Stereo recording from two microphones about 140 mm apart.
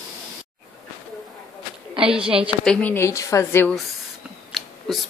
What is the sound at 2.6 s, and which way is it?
A woman's voice, 10° left (ahead or behind).